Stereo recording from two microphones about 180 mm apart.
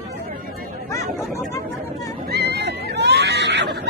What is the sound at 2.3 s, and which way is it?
Screaming, 65° right (ahead or behind).